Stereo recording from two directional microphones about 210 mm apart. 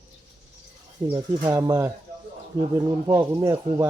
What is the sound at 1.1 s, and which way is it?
Speech, 15° right (ahead or behind).